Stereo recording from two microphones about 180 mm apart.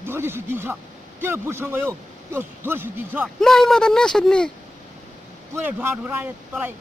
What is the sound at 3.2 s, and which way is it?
Speech, centre (ahead or behind).